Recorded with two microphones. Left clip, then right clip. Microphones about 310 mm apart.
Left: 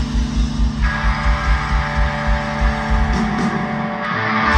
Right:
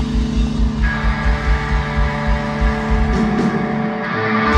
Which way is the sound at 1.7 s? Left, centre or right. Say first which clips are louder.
Left 1 dB; left.